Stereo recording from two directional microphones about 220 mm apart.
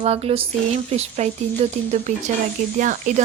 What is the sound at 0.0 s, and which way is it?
A woman's voice, 25° right (ahead or behind).